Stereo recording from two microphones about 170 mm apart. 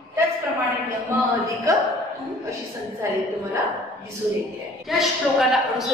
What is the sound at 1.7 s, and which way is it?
Speech, 20° right (ahead or behind).